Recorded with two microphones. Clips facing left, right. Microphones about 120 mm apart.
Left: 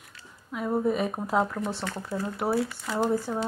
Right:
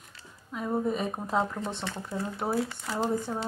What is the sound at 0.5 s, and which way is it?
Speech, 5° left (ahead or behind).